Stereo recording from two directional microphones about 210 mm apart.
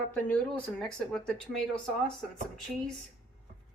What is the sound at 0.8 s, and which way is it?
Speech, 5° left (ahead or behind).